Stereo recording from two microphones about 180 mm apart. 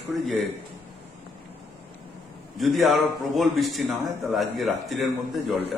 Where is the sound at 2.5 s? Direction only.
Centre (ahead or behind).